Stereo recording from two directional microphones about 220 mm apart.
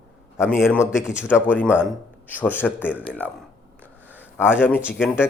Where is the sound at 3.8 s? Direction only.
10° right (ahead or behind).